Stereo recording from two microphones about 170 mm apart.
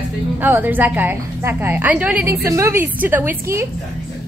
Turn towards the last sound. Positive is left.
turn(degrees=-15)  # may be behind; listen again after turning